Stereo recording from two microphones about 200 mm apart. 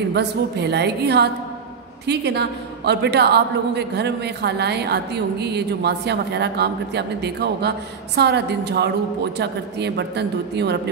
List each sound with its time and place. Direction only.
0.1 s a woman's voice: 55° right (ahead or behind)